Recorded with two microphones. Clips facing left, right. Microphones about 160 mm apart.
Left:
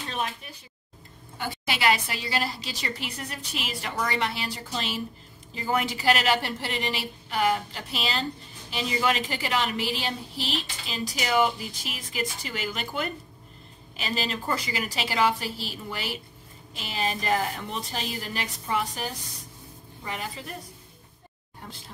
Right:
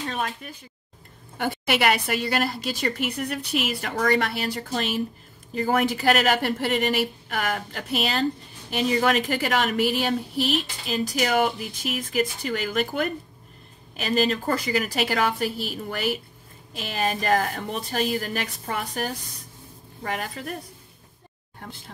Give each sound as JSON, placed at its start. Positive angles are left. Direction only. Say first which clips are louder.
{"t": 0.1, "sound": "speech", "louder": "right 2 dB", "side_deg": -50}
{"t": 1.4, "sound": "a woman's voice", "louder": "right 4 dB", "side_deg": -60}